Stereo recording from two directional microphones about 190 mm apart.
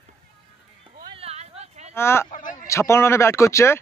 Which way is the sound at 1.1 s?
30° right (ahead or behind).